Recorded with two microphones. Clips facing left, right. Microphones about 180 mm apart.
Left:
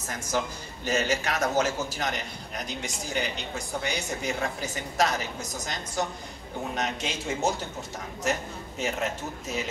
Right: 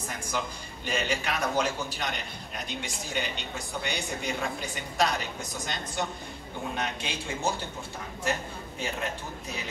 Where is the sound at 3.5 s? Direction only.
40° left (ahead or behind).